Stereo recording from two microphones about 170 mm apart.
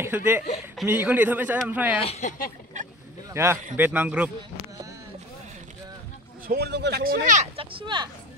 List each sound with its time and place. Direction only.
0.0 s a man's voice: 10° right (ahead or behind)
2.0 s speech: 40° left (ahead or behind)
3.4 s a man's voice: 15° right (ahead or behind)
6.4 s a man's voice: 70° right (ahead or behind); by 7.4 s 55° right (ahead or behind)
7.5 s speech: 25° right (ahead or behind)